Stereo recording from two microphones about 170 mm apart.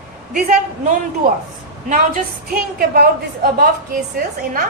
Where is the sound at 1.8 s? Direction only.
55° right (ahead or behind).